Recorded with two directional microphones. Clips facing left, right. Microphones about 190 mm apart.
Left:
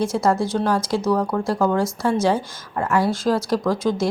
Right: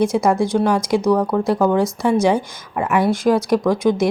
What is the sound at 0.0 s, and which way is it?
Speech, 15° right (ahead or behind).